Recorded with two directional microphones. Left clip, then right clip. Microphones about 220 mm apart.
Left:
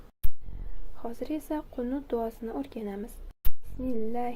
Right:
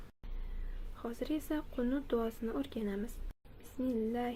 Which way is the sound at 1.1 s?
5° left (ahead or behind).